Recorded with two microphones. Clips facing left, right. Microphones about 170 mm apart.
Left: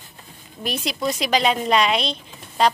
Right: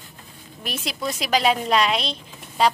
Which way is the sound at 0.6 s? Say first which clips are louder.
Left 4 dB; centre (ahead or behind).